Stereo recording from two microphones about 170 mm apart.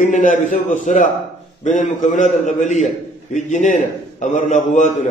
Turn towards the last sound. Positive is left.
turn(degrees=45)  # may be behind; listen again after turning